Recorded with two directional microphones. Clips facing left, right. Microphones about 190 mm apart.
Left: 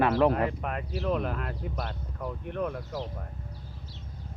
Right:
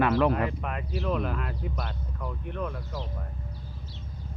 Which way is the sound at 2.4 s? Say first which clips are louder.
Left 3 dB; 50° left (ahead or behind).